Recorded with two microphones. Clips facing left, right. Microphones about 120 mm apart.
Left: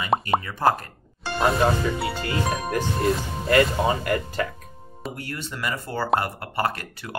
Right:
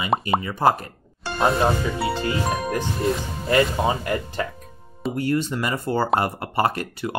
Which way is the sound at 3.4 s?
25° right (ahead or behind).